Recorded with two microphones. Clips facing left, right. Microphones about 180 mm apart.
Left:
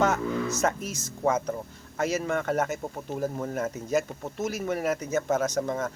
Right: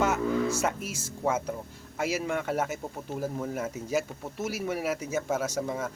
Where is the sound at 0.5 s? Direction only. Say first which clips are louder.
Left 2 dB; 10° right (ahead or behind).